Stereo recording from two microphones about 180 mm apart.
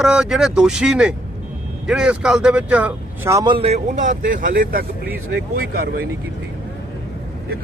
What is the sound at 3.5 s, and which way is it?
Speech, 35° right (ahead or behind).